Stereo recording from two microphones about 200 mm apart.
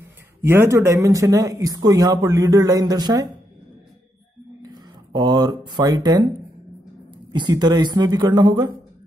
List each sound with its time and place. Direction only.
0.0 s a man's voice: 10° right (ahead or behind)
4.6 s speech: 20° right (ahead or behind)
7.3 s speech: 20° right (ahead or behind)